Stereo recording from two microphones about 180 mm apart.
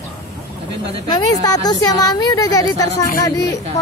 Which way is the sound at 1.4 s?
20° left (ahead or behind).